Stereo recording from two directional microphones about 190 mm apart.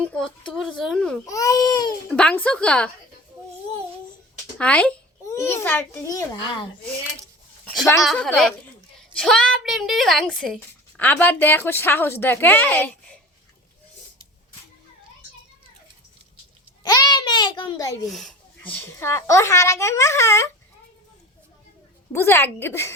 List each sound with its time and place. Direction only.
0.1 s a child's voice: 5° left (ahead or behind)
1.3 s speech: 20° left (ahead or behind)
2.0 s a child's voice: 5° left (ahead or behind)
4.5 s a child's voice: 5° left (ahead or behind)
8.0 s a child's voice: 5° left (ahead or behind)
16.8 s a sound: 20° left (ahead or behind)
18.0 s a woman's voice: centre (ahead or behind)
22.1 s a woman's voice: 10° left (ahead or behind)